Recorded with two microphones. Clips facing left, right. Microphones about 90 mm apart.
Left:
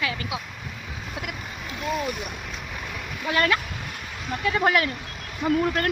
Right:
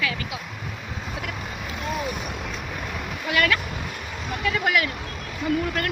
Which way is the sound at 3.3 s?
30° left (ahead or behind).